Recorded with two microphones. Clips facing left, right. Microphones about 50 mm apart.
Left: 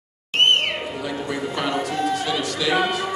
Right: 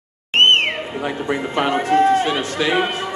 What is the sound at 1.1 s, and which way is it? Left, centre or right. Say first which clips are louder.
A man's voice: right 6 dB; right.